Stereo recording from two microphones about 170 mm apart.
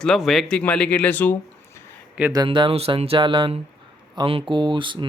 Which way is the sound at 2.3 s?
25° right (ahead or behind).